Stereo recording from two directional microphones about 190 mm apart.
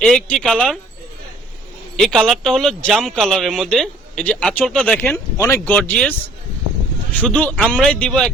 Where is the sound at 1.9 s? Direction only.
Centre (ahead or behind).